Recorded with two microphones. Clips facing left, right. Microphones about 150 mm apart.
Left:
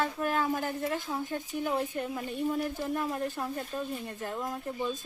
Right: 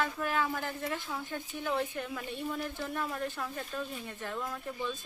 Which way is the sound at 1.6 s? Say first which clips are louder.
Left 1 dB; 20° left (ahead or behind).